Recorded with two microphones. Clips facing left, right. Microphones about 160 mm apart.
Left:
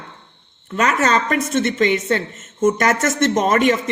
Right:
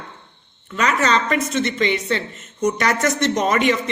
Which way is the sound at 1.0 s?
50° left (ahead or behind).